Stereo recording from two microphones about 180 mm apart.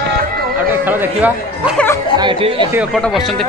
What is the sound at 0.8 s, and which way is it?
Speech, 10° right (ahead or behind).